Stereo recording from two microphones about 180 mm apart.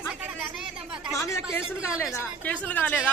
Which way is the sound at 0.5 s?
5° right (ahead or behind).